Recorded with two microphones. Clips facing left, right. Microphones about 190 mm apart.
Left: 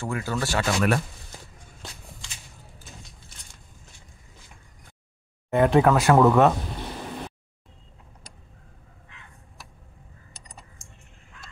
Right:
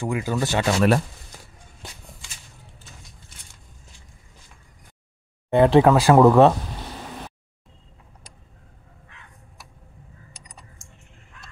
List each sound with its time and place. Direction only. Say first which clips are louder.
0.0 s speech: right 4 dB; 15° right (ahead or behind)
5.5 s speech: right 4 dB; 30° right (ahead or behind)